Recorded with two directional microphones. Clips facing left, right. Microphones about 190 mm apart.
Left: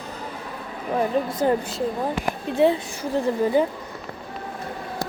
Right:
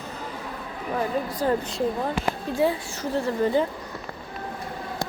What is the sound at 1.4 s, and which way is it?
Speech, 20° left (ahead or behind).